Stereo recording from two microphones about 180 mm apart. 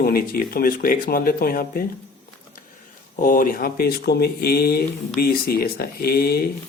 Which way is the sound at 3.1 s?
50° left (ahead or behind).